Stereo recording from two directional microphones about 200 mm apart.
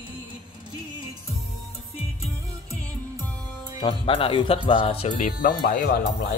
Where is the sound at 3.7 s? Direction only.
25° left (ahead or behind); by 6.3 s 45° left (ahead or behind).